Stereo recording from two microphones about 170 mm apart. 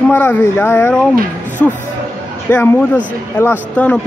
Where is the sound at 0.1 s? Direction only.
10° left (ahead or behind).